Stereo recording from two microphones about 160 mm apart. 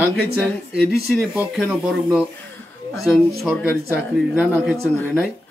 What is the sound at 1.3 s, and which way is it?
Speech, 10° right (ahead or behind).